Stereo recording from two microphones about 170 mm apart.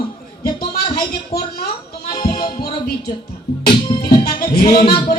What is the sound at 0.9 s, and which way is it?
Speech, 65° left (ahead or behind).